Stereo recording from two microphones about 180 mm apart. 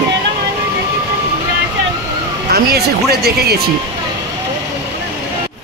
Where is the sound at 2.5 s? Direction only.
60° right (ahead or behind).